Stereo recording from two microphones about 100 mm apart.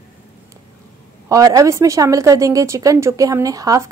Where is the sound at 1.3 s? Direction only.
35° right (ahead or behind).